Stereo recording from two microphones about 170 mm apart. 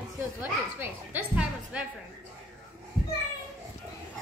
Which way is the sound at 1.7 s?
5° right (ahead or behind).